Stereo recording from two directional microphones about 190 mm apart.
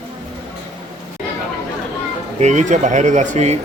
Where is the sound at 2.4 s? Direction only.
40° right (ahead or behind).